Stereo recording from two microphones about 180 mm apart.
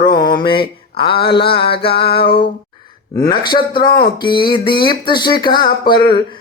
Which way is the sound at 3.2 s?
25° left (ahead or behind).